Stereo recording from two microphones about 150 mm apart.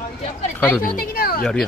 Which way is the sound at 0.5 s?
10° left (ahead or behind).